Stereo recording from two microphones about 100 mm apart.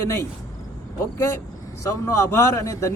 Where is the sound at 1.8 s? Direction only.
30° left (ahead or behind).